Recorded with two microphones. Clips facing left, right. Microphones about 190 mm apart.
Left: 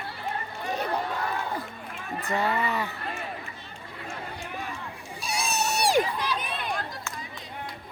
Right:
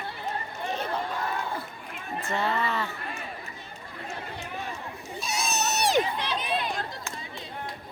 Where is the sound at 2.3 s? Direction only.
15° left (ahead or behind).